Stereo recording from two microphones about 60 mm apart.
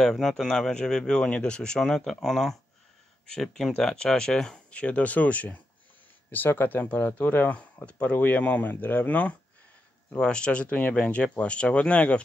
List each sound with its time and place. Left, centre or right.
0.0 s speech: centre; by 9.4 s left
10.1 s speech: centre